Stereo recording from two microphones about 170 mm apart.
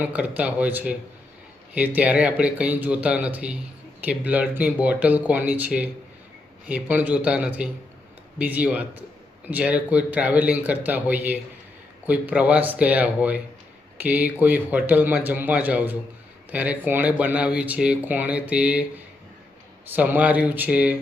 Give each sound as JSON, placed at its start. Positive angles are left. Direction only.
{"t": 0.0, "sound": "speech", "side_deg": -10}